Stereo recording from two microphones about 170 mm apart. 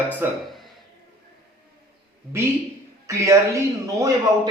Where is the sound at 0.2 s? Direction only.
10° right (ahead or behind).